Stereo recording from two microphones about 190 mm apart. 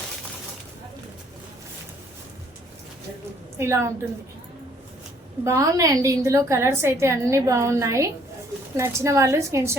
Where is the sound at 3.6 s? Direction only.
15° right (ahead or behind).